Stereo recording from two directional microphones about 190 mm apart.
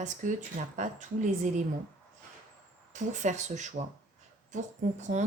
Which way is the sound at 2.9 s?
40° right (ahead or behind).